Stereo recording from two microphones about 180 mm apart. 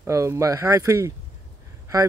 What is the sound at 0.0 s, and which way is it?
Speech, 15° right (ahead or behind).